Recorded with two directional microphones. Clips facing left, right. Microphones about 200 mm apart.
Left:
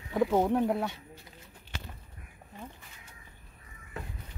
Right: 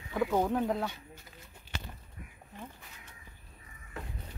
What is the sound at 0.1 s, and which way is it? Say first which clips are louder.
Speech: left 3 dB; 20° left (ahead or behind).